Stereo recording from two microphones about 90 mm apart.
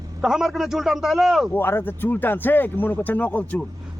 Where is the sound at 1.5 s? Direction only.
25° left (ahead or behind).